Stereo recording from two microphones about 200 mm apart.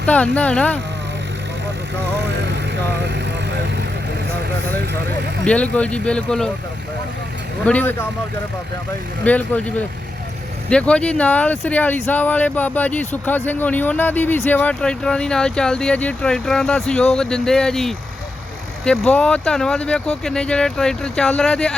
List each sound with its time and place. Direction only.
0.0 s speech: 5° left (ahead or behind)
3.0 s vehicle: 60° right (ahead or behind)
5.5 s speech: 5° left (ahead or behind)
7.6 s speech: 5° left (ahead or behind)
9.2 s speech: 5° left (ahead or behind)